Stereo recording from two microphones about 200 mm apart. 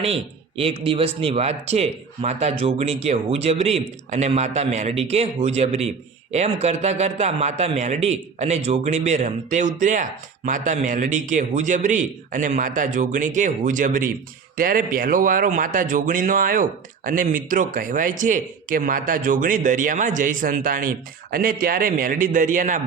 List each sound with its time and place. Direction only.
0.0 s a man's voice: 30° right (ahead or behind)